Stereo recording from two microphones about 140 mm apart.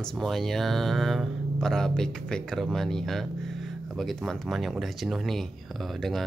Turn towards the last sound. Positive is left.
turn(degrees=0)  # may be behind; listen again after turning